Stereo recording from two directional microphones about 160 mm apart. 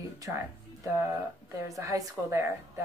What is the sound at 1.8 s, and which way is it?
Speech, 20° right (ahead or behind).